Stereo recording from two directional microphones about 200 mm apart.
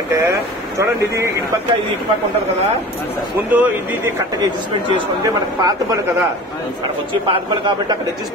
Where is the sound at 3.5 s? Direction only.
10° right (ahead or behind).